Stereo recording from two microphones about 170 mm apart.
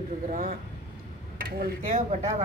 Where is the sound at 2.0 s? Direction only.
40° right (ahead or behind).